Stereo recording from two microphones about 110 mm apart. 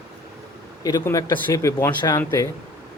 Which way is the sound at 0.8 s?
35° left (ahead or behind).